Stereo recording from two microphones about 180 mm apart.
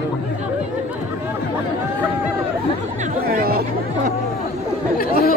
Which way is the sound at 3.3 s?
55° right (ahead or behind).